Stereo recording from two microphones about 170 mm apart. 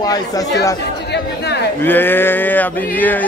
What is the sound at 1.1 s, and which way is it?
Chatter, 80° left.